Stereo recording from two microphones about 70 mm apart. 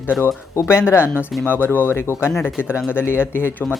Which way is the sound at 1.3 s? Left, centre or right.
Centre.